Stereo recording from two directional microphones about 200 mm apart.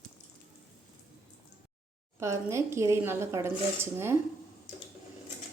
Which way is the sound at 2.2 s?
15° right (ahead or behind).